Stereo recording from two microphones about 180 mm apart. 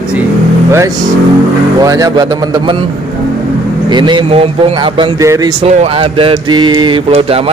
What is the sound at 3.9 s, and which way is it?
Mantra, 25° right (ahead or behind).